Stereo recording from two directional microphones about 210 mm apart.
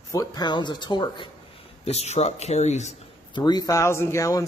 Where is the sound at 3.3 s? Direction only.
20° left (ahead or behind).